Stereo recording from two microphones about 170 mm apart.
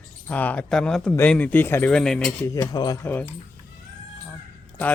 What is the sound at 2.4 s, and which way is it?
Speech, 20° left (ahead or behind).